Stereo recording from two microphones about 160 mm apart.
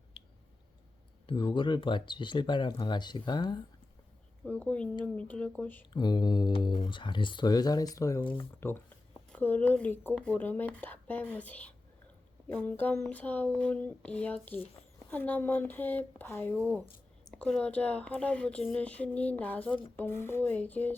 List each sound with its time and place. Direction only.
1.3 s speech: 30° left (ahead or behind)
4.4 s a woman's voice: 10° left (ahead or behind)
5.9 s a woman's voice: 25° left (ahead or behind)
16.6 s speech: 15° right (ahead or behind)
17.3 s a woman's voice: 5° left (ahead or behind)